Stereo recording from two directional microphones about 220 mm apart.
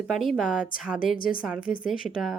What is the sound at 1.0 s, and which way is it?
Speech, 40° left (ahead or behind).